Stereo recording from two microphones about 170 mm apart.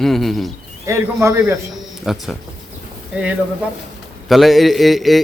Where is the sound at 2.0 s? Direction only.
Centre (ahead or behind).